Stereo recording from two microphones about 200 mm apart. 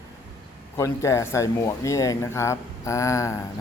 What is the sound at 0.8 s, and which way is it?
A man's voice, 15° left (ahead or behind).